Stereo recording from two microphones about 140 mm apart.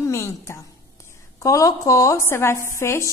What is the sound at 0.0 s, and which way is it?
A woman's voice, 20° left (ahead or behind).